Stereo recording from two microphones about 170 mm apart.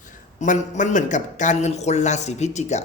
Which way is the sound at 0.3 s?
45° left (ahead or behind).